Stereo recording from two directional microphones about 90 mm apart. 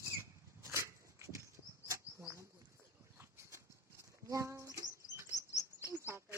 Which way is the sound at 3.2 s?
30° right (ahead or behind).